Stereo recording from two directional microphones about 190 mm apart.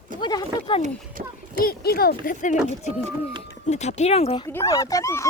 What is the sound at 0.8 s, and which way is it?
Speech, 50° right (ahead or behind).